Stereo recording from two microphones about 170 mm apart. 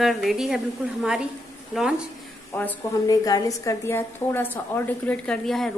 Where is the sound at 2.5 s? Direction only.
10° left (ahead or behind).